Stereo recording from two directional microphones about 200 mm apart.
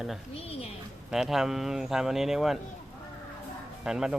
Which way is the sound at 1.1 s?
Centre (ahead or behind).